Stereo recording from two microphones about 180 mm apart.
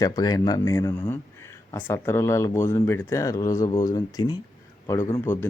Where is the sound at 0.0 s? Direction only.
20° left (ahead or behind).